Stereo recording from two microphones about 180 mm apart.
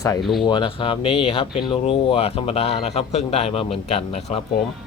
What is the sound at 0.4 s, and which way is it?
A man's voice, 25° left (ahead or behind).